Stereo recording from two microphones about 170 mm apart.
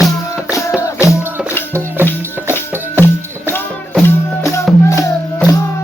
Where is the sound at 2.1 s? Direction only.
15° left (ahead or behind).